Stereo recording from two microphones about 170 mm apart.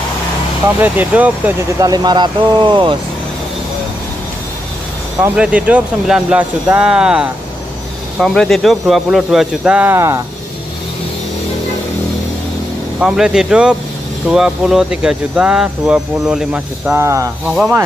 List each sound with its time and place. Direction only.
0.7 s speech: 10° right (ahead or behind)
1.8 s speech: 25° right (ahead or behind)
5.3 s speech: 5° right (ahead or behind)
13.0 s speech: 5° right (ahead or behind)